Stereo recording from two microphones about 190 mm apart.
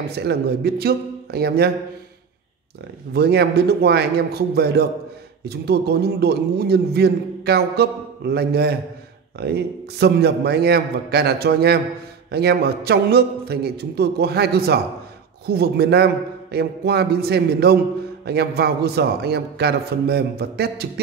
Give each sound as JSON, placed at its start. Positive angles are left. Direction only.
{"t": 0.2, "sound": "a man's voice", "side_deg": -60}
{"t": 3.1, "sound": "a man's voice", "side_deg": -60}